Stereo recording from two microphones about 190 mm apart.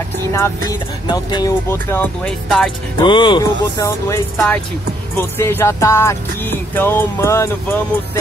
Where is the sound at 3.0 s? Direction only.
25° left (ahead or behind).